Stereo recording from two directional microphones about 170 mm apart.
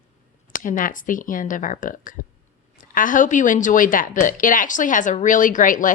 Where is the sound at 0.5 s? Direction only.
55° left (ahead or behind).